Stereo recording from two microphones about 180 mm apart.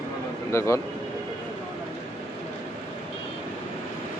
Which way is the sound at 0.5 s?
15° left (ahead or behind).